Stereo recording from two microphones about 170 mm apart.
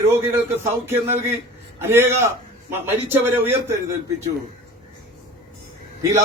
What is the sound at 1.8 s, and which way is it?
A man's voice, 15° right (ahead or behind).